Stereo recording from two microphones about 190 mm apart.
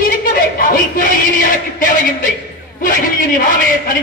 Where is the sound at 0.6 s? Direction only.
50° left (ahead or behind).